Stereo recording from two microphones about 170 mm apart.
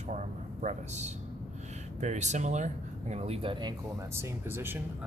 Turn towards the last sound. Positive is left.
turn(degrees=-15)  # may be behind; listen again after turning